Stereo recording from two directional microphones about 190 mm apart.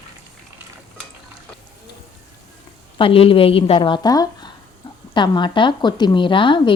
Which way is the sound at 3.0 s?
30° left (ahead or behind).